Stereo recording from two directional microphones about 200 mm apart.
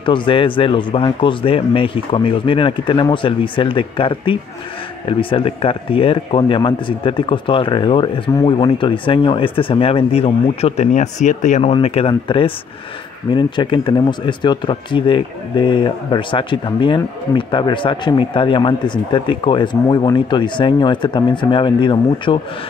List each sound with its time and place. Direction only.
0.0 s speech: 25° left (ahead or behind)